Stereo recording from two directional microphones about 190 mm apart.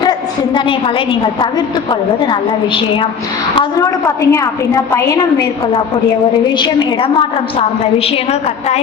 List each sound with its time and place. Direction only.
0.0 s a woman's voice: 25° left (ahead or behind)
6.6 s a woman's voice: 25° left (ahead or behind)